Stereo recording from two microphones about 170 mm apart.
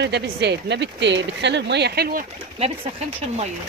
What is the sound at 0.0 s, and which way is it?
Speech, 80° right.